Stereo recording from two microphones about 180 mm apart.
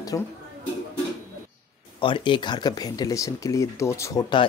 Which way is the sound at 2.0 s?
25° left (ahead or behind).